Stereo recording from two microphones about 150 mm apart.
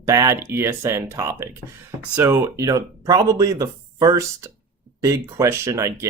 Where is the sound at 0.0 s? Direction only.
20° right (ahead or behind).